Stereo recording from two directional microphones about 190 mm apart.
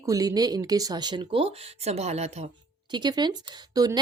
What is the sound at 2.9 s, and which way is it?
Speech, 25° right (ahead or behind).